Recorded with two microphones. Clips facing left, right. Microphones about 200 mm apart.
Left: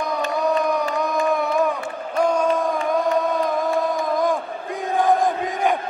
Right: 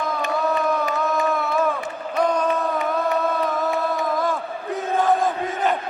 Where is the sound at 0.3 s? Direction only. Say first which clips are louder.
Left 1 dB; 15° left (ahead or behind).